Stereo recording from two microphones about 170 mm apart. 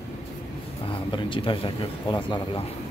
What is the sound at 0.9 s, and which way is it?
Speech, 30° left (ahead or behind).